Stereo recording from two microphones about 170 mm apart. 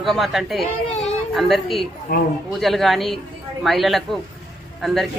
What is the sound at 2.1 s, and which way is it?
Speech, 65° left (ahead or behind).